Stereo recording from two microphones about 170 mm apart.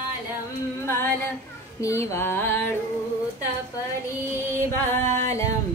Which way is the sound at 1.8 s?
15° left (ahead or behind).